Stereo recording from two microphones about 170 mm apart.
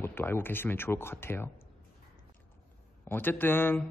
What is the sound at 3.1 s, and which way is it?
Speech, 10° left (ahead or behind).